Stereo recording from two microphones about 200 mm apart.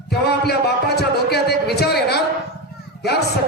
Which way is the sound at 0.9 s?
55° left (ahead or behind).